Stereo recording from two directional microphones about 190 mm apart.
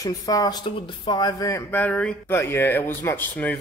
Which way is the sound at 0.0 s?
20° left (ahead or behind).